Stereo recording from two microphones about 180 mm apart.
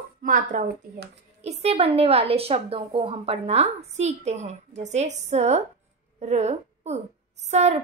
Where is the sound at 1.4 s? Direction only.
35° right (ahead or behind).